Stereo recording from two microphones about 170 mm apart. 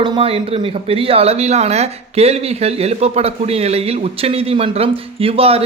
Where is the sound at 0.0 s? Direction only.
35° right (ahead or behind).